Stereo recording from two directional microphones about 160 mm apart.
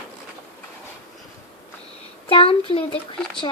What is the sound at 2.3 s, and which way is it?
Speech, 35° left (ahead or behind).